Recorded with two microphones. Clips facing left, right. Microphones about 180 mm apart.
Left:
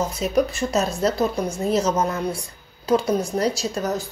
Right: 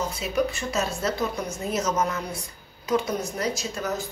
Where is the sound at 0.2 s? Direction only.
40° left (ahead or behind).